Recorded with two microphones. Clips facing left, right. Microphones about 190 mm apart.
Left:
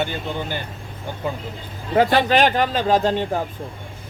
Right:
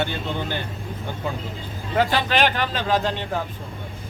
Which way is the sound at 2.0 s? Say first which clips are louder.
Left 4 dB; 45° left (ahead or behind).